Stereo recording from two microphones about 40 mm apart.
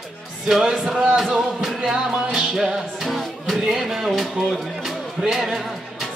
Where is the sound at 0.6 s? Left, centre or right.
Centre.